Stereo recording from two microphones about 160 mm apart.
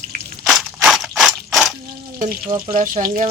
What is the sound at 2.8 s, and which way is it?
Speech, 55° right (ahead or behind).